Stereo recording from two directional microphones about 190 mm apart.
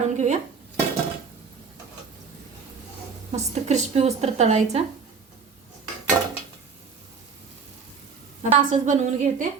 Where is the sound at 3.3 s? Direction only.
35° right (ahead or behind).